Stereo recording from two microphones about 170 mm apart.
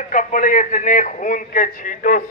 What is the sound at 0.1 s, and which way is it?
A man's voice, 50° left (ahead or behind).